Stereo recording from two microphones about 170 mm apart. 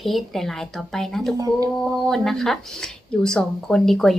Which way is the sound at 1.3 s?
20° right (ahead or behind).